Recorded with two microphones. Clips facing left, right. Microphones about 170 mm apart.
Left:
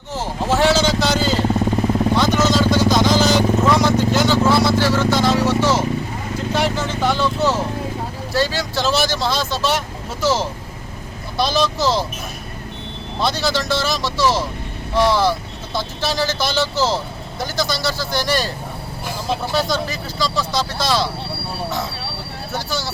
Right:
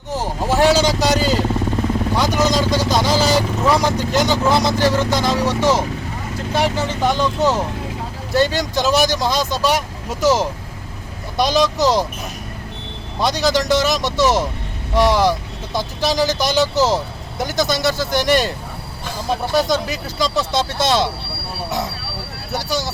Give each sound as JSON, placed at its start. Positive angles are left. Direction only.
{"t": 0.2, "sound": "vehicle", "side_deg": -15}
{"t": 6.5, "sound": "speech", "side_deg": -10}
{"t": 13.1, "sound": "speech", "side_deg": -15}
{"t": 19.6, "sound": "speech", "side_deg": -20}
{"t": 22.5, "sound": "speech", "side_deg": -15}